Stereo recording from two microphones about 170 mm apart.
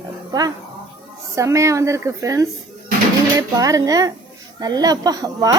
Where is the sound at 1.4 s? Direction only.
20° right (ahead or behind).